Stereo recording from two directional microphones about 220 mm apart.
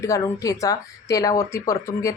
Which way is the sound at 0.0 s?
15° left (ahead or behind).